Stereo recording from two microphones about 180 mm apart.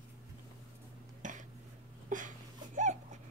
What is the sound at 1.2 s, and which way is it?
Dishes, 45° right (ahead or behind).